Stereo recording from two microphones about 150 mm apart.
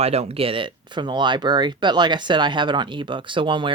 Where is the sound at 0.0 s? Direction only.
45° right (ahead or behind).